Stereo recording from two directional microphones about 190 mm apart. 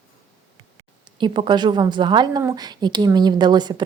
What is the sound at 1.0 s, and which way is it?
A woman's voice, 25° right (ahead or behind).